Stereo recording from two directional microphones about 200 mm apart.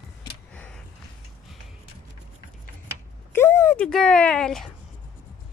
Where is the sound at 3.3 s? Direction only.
10° left (ahead or behind).